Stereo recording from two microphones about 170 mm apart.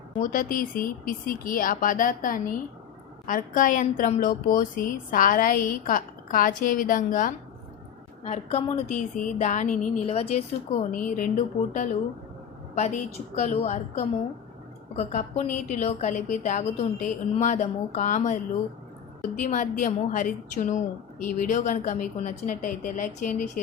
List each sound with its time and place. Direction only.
0.2 s a woman's voice: 55° left (ahead or behind)
8.2 s a woman's voice: 40° left (ahead or behind)